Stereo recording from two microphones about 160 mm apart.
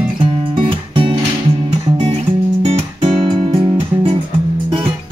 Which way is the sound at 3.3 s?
25° right (ahead or behind).